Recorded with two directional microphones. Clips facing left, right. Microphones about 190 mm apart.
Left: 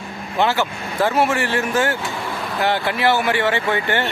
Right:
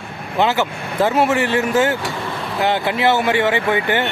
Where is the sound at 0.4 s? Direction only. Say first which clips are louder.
Right 2 dB; 20° right (ahead or behind).